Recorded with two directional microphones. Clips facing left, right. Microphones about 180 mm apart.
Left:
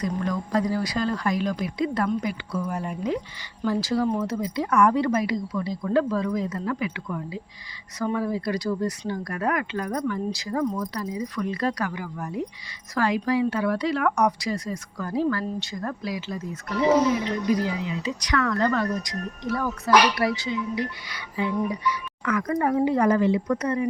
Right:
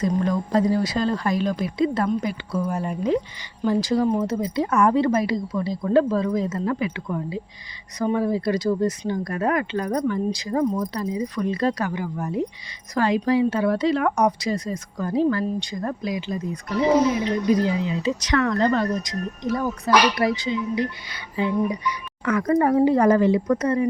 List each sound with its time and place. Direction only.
0.2 s speech: 30° right (ahead or behind)
3.6 s a woman's voice: 20° right (ahead or behind); by 23.9 s 35° right (ahead or behind)